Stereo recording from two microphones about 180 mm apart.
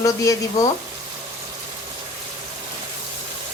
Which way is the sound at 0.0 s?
20° left (ahead or behind).